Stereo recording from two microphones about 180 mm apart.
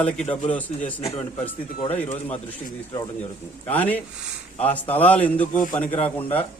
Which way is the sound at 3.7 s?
10° left (ahead or behind).